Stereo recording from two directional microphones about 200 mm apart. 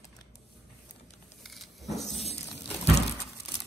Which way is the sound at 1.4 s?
Centre (ahead or behind).